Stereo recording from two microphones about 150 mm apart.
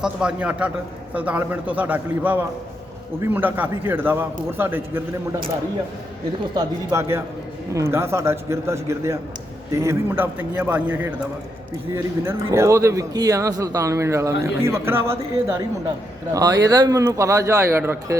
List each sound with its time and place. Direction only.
0.0 s a man's voice: 5° right (ahead or behind)
6.6 s a man's voice: 20° right (ahead or behind)